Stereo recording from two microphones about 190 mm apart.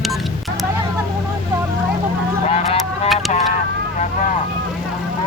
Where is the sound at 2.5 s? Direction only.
35° left (ahead or behind).